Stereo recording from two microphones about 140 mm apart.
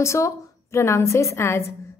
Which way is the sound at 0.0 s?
20° left (ahead or behind).